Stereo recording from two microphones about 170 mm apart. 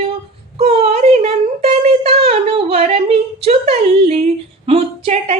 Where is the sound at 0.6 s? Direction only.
35° right (ahead or behind).